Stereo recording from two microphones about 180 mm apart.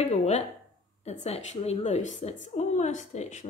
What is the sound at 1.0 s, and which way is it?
Speech, 35° left (ahead or behind).